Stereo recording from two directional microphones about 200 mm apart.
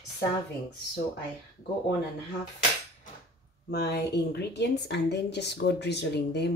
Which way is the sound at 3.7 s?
55° left (ahead or behind).